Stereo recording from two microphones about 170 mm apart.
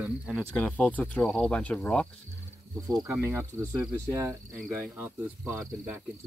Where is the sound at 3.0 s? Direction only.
15° right (ahead or behind).